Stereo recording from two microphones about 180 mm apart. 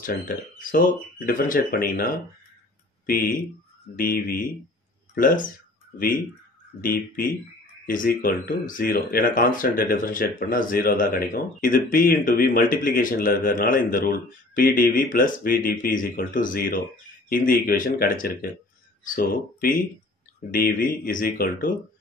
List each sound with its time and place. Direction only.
0.0 s speech: 50° left (ahead or behind)
3.9 s speech: 50° left (ahead or behind)
6.8 s speech: 50° left (ahead or behind)